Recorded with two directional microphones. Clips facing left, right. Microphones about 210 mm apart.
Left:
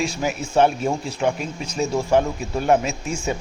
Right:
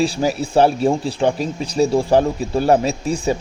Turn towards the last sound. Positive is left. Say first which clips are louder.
# right 6 dB
turn(degrees=-35)  # may be behind; listen again after turning